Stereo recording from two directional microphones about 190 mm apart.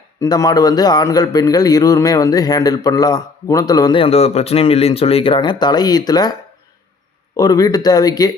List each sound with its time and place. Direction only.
0.2 s speech: 20° left (ahead or behind)
7.3 s speech: 20° left (ahead or behind)